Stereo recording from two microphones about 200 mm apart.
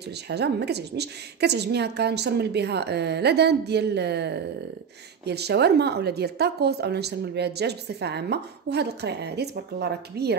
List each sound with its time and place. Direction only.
0.3 s speech: 55° right (ahead or behind)